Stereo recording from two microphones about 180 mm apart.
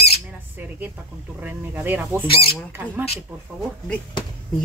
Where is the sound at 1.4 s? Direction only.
10° right (ahead or behind).